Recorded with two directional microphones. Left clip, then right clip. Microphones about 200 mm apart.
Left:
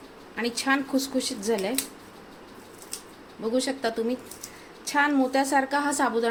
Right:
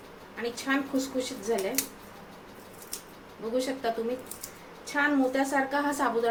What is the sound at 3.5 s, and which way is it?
A woman's voice, 50° left (ahead or behind).